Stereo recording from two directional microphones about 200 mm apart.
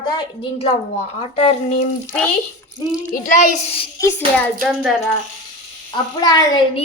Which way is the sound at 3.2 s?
40° left (ahead or behind).